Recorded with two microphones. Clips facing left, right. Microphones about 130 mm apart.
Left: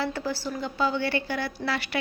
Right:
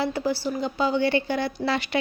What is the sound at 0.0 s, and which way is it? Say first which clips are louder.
A woman's voice: right 4 dB; 15° right (ahead or behind).